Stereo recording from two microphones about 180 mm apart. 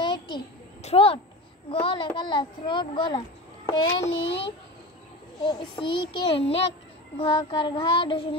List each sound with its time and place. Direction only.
0.0 s a sound: 25° left (ahead or behind)
0.8 s a child's voice: 30° left (ahead or behind)
5.4 s a child's voice: 25° left (ahead or behind)